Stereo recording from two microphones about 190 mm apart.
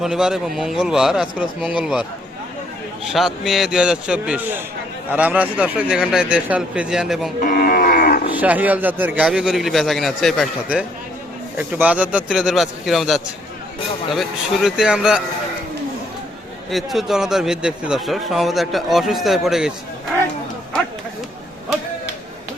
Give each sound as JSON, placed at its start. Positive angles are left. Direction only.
{"t": 0.0, "sound": "a man's voice", "side_deg": -5}
{"t": 3.1, "sound": "a man's voice", "side_deg": 0}
{"t": 7.4, "sound": "livestock", "side_deg": 50}
{"t": 8.3, "sound": "a man's voice", "side_deg": -10}
{"t": 16.6, "sound": "a man's voice", "side_deg": 0}